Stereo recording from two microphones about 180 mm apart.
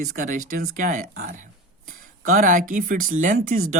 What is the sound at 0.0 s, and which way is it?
Speech, 50° right (ahead or behind).